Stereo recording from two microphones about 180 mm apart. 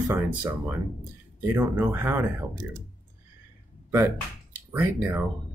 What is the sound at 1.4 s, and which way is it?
Speech, 10° right (ahead or behind).